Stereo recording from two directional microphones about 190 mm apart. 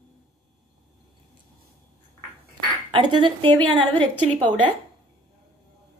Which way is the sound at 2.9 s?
25° right (ahead or behind).